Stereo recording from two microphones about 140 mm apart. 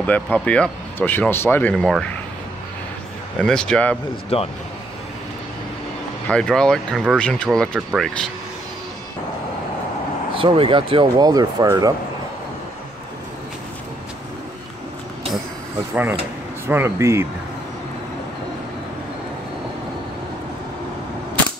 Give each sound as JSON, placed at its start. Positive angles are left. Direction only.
{"t": 0.0, "sound": "speech", "side_deg": 10}
{"t": 3.4, "sound": "speech", "side_deg": 5}
{"t": 4.3, "sound": "speech", "side_deg": 45}
{"t": 6.2, "sound": "speech", "side_deg": 5}
{"t": 10.3, "sound": "speech", "side_deg": -40}
{"t": 15.9, "sound": "speech", "side_deg": -15}